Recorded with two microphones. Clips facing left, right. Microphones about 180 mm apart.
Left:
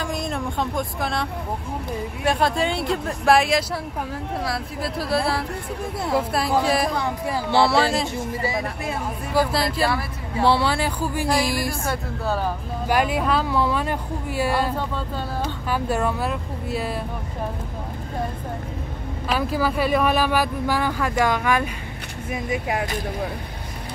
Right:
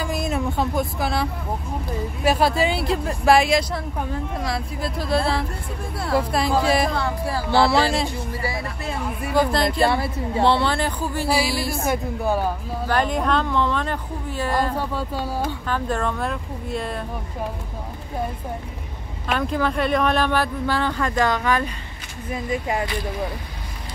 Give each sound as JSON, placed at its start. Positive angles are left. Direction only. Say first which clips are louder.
{"t": 0.0, "sound": "vehicle", "louder": "right 2 dB", "side_deg": -5}
{"t": 2.2, "sound": "speech", "louder": "right 2 dB", "side_deg": -5}
{"t": 6.9, "sound": "speech", "louder": "even", "side_deg": 15}
{"t": 7.5, "sound": "speech", "louder": "right 1 dB", "side_deg": 0}
{"t": 8.4, "sound": "speech", "louder": "left 3 dB", "side_deg": 20}
{"t": 9.3, "sound": "speech", "louder": "right 2 dB", "side_deg": 5}
{"t": 9.8, "sound": "a woman's voice", "louder": "right 4 dB", "side_deg": -25}
{"t": 10.4, "sound": "speech", "louder": "even", "side_deg": 10}
{"t": 11.2, "sound": "speech", "louder": "right 1 dB", "side_deg": -10}
{"t": 12.8, "sound": "speech", "louder": "even", "side_deg": 10}
{"t": 14.8, "sound": "speech", "louder": "right 2 dB", "side_deg": -10}
{"t": 15.7, "sound": "speech", "louder": "left 3 dB", "side_deg": 10}
{"t": 19.2, "sound": "speech", "louder": "even", "side_deg": 5}